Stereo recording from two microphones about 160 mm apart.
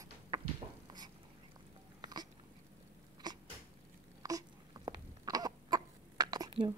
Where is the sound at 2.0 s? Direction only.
25° right (ahead or behind).